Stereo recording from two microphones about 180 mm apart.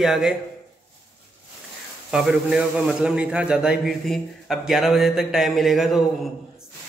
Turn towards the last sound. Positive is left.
turn(degrees=0)  # may be behind; listen again after turning